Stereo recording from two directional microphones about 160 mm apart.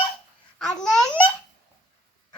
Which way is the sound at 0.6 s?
5° left (ahead or behind).